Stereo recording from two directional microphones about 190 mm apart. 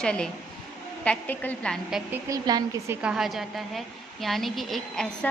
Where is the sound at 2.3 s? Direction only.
20° right (ahead or behind).